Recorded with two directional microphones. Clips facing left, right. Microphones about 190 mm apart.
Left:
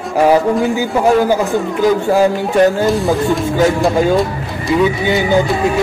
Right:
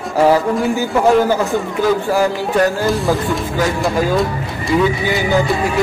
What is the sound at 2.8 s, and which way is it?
Speech, centre (ahead or behind).